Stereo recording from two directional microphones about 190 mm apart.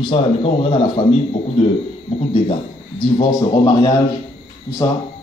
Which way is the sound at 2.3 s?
25° left (ahead or behind).